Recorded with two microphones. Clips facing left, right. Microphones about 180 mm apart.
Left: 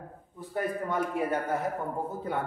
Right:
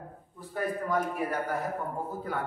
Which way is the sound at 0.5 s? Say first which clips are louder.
Left 1 dB; 25° left (ahead or behind).